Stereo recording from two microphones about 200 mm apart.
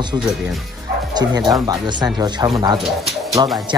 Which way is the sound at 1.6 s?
20° right (ahead or behind).